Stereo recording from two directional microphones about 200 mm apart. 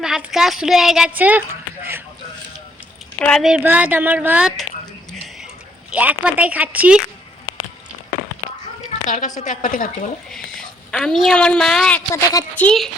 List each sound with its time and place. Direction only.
0.0 s a child's voice: 5° right (ahead or behind)
3.2 s speech: 5° left (ahead or behind)
5.9 s speech: 5° right (ahead or behind)
8.9 s a sound: 35° left (ahead or behind)
9.4 s a woman's voice: 40° left (ahead or behind)
10.3 s a woman's voice: 5° left (ahead or behind)
12.5 s a woman's voice: 5° left (ahead or behind)